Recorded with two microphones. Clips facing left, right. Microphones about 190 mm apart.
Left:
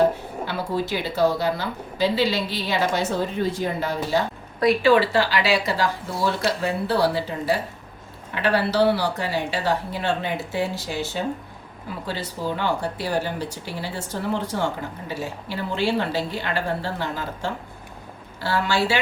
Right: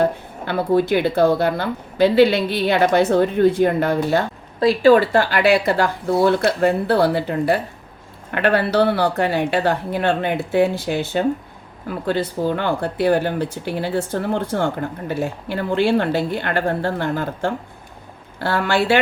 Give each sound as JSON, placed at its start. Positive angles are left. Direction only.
{"t": 0.4, "sound": "speech", "side_deg": -55}
{"t": 4.8, "sound": "speech", "side_deg": -45}